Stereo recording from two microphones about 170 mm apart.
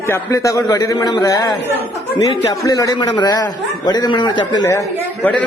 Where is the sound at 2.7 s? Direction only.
20° left (ahead or behind).